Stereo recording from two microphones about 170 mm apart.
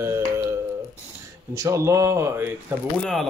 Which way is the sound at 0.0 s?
15° right (ahead or behind).